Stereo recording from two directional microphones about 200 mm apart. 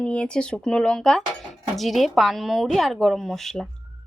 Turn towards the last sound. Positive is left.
turn(degrees=0)  # may be behind; listen again after turning